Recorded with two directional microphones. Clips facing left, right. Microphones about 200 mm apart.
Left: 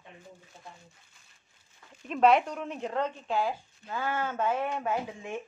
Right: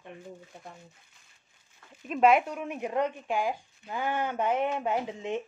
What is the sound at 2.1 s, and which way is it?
Speech, 10° right (ahead or behind).